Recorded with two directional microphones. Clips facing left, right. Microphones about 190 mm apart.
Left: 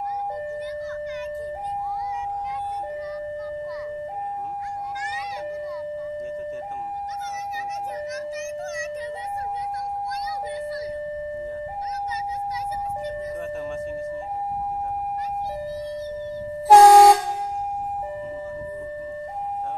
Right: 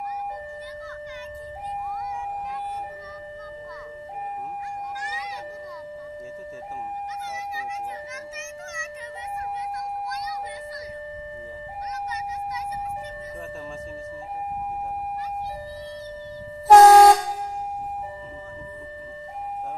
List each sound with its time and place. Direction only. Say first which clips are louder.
8.1 s music: left 8 dB; 40° left (ahead or behind)
13.4 s music: left 6 dB; centre (ahead or behind)
16.6 s vehicle: even; 10° left (ahead or behind)